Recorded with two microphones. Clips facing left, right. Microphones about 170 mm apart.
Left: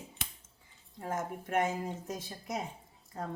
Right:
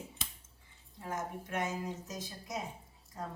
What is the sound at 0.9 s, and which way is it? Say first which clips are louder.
Speech: left 3 dB; 50° left (ahead or behind).